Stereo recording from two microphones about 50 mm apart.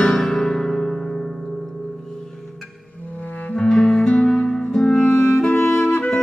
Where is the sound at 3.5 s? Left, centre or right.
Centre.